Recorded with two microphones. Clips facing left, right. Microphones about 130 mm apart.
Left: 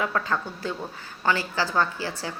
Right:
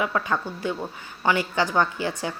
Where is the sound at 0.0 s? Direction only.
15° right (ahead or behind).